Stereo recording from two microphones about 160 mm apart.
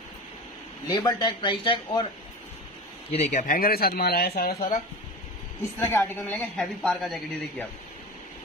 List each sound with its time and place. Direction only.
0.8 s speech: 25° left (ahead or behind)
3.1 s speech: 45° left (ahead or behind); by 4.8 s 60° left (ahead or behind)
5.8 s a woman's voice: 10° left (ahead or behind)